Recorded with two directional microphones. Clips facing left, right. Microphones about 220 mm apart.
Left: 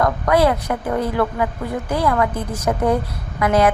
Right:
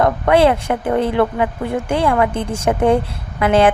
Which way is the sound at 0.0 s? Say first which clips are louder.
Right 3 dB; 25° right (ahead or behind).